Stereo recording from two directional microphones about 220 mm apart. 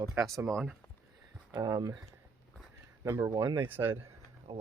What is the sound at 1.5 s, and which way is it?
Speech, 20° right (ahead or behind).